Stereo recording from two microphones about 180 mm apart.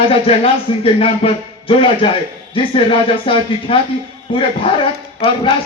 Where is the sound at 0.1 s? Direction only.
30° left (ahead or behind).